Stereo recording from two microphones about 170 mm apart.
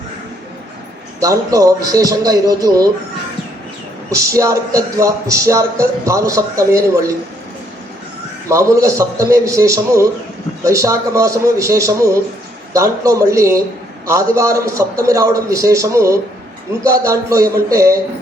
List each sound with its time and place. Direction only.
1.2 s a man's voice: 20° right (ahead or behind)
4.1 s speech: 20° right (ahead or behind)
8.4 s a man's voice: 20° right (ahead or behind)